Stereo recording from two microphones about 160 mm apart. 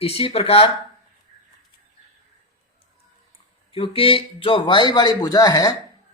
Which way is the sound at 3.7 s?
35° left (ahead or behind).